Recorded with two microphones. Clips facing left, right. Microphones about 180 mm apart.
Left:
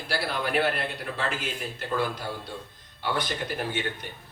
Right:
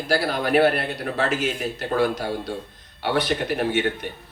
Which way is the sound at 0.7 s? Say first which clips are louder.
Right 6 dB; 75° right (ahead or behind).